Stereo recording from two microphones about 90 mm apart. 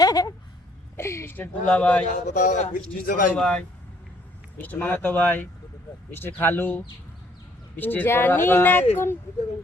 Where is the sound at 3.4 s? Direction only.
10° left (ahead or behind).